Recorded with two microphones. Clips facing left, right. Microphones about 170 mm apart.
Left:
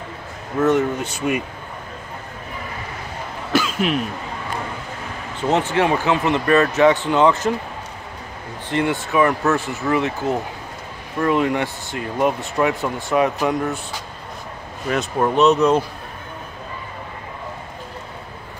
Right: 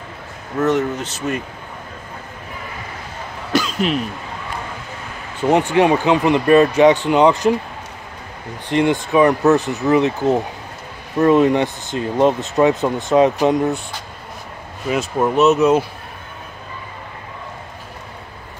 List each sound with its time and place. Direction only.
0.6 s speech: 10° left (ahead or behind)
3.5 s throat clearing: 5° left (ahead or behind)
5.4 s speech: 15° right (ahead or behind)
8.6 s speech: 15° right (ahead or behind)
14.9 s speech: centre (ahead or behind)